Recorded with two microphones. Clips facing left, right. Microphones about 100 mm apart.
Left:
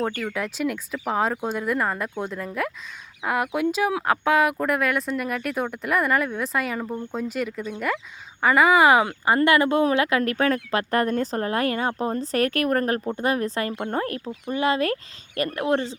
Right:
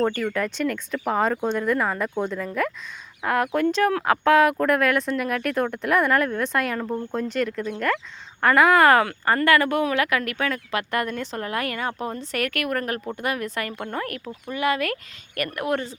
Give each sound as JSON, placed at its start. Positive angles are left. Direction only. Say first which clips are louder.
{"t": 0.0, "sound": "speech", "louder": "right 3 dB", "side_deg": 5}
{"t": 6.9, "sound": "speech", "louder": "right 3 dB", "side_deg": -10}
{"t": 7.2, "sound": "speech", "louder": "right 2 dB", "side_deg": 5}